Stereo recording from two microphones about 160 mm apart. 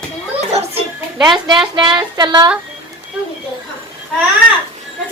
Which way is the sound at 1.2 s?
25° right (ahead or behind).